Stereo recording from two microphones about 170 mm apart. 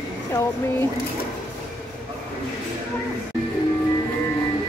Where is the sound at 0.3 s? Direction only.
15° left (ahead or behind).